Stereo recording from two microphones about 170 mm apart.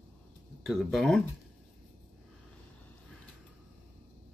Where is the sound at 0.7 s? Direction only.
Centre (ahead or behind).